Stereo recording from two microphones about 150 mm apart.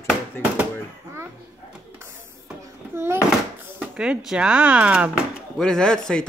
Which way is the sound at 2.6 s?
15° right (ahead or behind).